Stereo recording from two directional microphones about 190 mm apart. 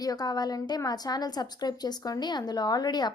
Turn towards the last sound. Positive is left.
turn(degrees=20)  # may be behind; listen again after turning